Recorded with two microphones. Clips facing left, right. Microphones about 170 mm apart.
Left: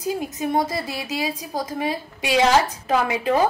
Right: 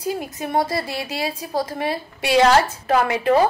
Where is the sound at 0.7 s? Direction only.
20° left (ahead or behind).